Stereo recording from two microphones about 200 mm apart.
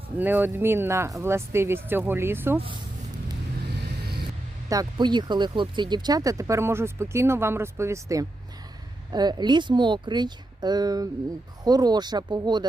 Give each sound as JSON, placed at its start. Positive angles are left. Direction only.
{"t": 0.2, "sound": "speech", "side_deg": -10}
{"t": 4.7, "sound": "speech", "side_deg": -20}